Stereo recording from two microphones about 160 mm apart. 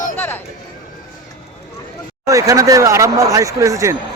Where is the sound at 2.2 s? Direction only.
20° right (ahead or behind).